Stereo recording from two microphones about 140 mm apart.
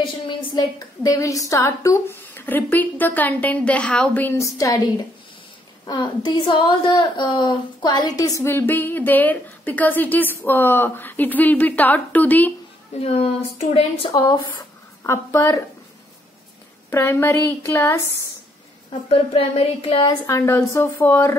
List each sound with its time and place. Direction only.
0.0 s a woman's voice: 35° left (ahead or behind); by 12.5 s 10° left (ahead or behind)
13.0 s speech: 50° left (ahead or behind)
14.1 s a woman's voice: 25° left (ahead or behind)
16.9 s a woman's voice: 15° left (ahead or behind)
18.9 s a woman's voice: 40° left (ahead or behind)
20.2 s a woman's voice: 20° left (ahead or behind)